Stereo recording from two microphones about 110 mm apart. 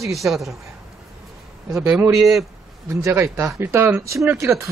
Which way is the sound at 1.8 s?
10° right (ahead or behind).